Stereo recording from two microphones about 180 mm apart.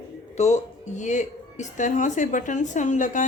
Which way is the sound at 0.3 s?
40° left (ahead or behind).